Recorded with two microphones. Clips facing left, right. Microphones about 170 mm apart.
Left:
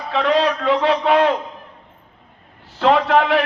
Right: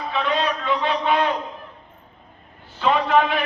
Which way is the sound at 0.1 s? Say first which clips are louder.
Left 6 dB; 90° left.